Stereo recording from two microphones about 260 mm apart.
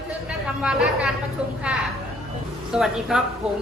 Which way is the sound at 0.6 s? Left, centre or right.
Centre.